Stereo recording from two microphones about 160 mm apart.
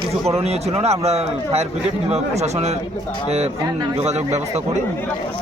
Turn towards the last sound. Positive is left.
turn(degrees=-45)  # may be behind; listen again after turning